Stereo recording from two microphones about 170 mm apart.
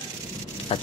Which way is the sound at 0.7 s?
35° left (ahead or behind).